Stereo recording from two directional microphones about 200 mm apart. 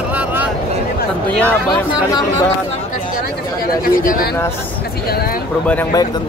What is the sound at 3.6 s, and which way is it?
Speech, 45° left (ahead or behind).